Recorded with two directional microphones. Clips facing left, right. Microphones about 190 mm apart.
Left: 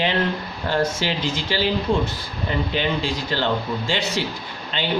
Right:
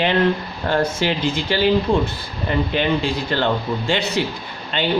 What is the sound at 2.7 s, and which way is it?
Speech, 55° right (ahead or behind).